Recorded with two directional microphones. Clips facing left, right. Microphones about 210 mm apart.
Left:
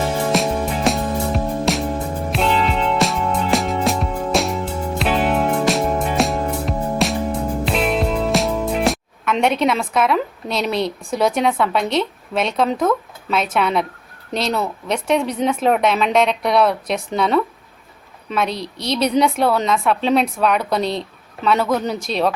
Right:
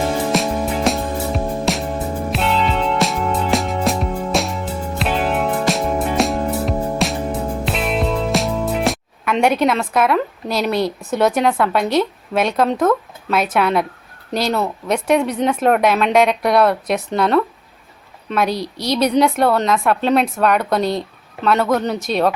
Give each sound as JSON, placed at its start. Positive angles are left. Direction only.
{"t": 0.3, "sound": "music", "side_deg": 0}
{"t": 11.0, "sound": "a woman's voice", "side_deg": -5}
{"t": 18.5, "sound": "a woman's voice", "side_deg": 25}
{"t": 18.9, "sound": "speech", "side_deg": 0}